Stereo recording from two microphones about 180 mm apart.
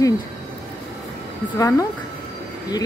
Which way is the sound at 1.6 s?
20° left (ahead or behind).